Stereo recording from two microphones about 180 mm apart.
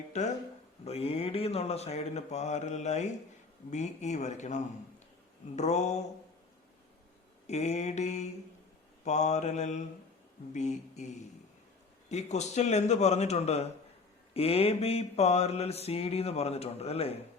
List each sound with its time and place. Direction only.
0.1 s speech: 40° left (ahead or behind)
0.9 s mantra: 35° left (ahead or behind)
7.4 s mantra: 40° left (ahead or behind)